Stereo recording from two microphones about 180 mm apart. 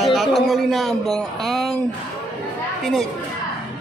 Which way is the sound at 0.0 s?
Centre (ahead or behind).